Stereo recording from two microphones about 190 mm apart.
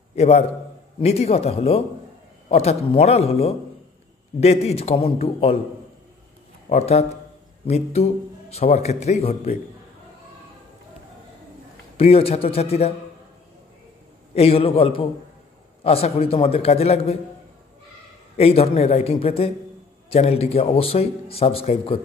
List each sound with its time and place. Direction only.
0.1 s a man's voice: 35° left (ahead or behind)
6.7 s a man's voice: 35° left (ahead or behind)
12.0 s a man's voice: 30° left (ahead or behind)
14.3 s a man's voice: 30° left (ahead or behind)
18.4 s a man's voice: 35° left (ahead or behind)